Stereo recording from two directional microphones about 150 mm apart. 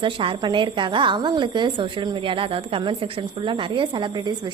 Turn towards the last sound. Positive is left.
turn(degrees=-30)  # may be behind; listen again after turning